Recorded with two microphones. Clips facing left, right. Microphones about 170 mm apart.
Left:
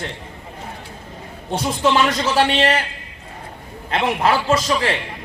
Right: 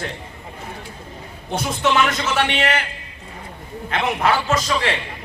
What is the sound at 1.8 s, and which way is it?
A man's voice, 30° left (ahead or behind).